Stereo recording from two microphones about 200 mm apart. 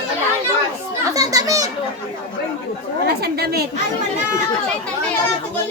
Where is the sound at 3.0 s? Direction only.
50° right (ahead or behind).